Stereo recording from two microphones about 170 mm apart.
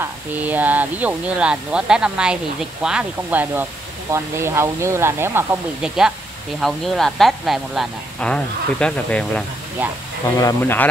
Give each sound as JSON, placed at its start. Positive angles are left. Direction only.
{"t": 0.0, "sound": "speech", "side_deg": -10}
{"t": 6.6, "sound": "speech", "side_deg": 0}
{"t": 9.8, "sound": "speech", "side_deg": -10}
{"t": 10.4, "sound": "speech", "side_deg": 10}